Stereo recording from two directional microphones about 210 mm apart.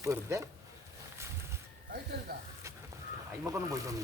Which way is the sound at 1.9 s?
50° right (ahead or behind).